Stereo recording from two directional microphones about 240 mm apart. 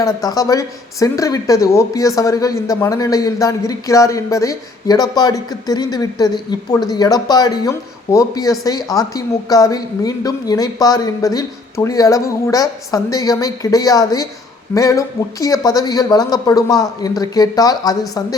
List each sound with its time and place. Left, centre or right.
0.0 s speech: centre